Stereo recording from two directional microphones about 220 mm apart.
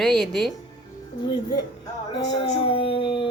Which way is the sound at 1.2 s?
20° left (ahead or behind).